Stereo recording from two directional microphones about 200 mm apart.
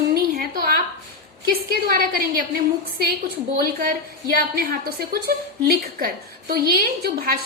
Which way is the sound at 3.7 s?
45° right (ahead or behind).